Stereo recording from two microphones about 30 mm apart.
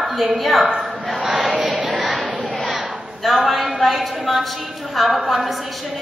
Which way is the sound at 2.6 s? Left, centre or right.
Centre.